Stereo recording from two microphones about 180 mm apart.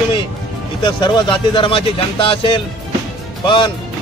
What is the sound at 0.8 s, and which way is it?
Speech, 25° left (ahead or behind).